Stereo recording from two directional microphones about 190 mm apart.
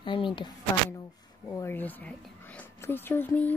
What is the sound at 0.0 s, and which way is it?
Speech, 25° left (ahead or behind).